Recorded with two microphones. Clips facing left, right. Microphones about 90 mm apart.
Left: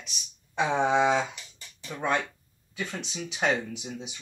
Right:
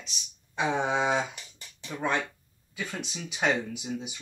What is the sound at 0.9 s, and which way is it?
Speech, 5° right (ahead or behind).